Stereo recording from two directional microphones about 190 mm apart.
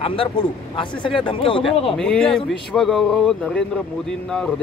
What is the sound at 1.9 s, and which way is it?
Speech, 5° left (ahead or behind).